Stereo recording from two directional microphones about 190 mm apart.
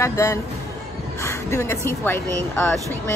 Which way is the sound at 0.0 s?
15° left (ahead or behind).